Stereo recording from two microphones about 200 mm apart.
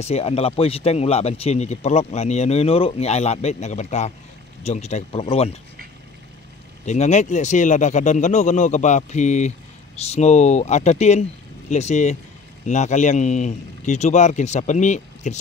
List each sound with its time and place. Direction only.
0.0 s speech: 30° left (ahead or behind)
6.9 s speech: 35° left (ahead or behind)